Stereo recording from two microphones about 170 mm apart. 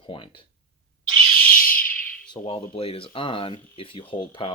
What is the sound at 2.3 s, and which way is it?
Speech, 30° left (ahead or behind).